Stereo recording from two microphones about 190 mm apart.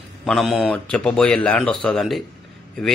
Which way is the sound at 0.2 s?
Centre (ahead or behind).